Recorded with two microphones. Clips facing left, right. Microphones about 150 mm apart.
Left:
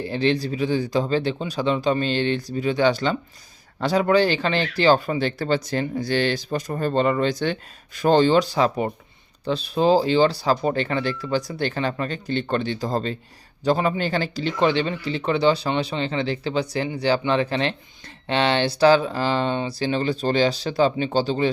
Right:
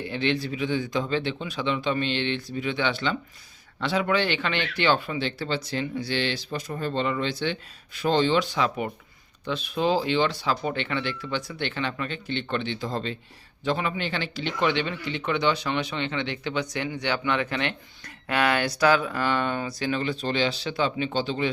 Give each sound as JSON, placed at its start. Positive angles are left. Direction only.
{"t": 0.0, "sound": "speech", "side_deg": 35}